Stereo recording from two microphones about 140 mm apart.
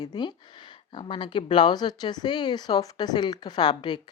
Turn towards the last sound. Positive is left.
turn(degrees=30)  # may be behind; listen again after turning